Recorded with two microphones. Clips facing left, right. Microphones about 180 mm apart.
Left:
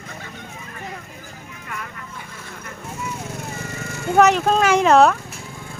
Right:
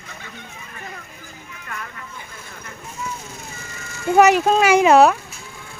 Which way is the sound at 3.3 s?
60° left (ahead or behind).